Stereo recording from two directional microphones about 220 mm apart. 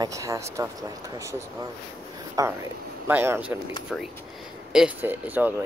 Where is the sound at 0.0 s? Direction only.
15° right (ahead or behind).